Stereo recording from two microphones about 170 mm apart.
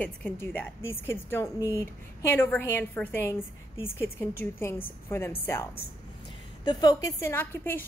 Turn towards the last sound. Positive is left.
turn(degrees=10)  # may be behind; listen again after turning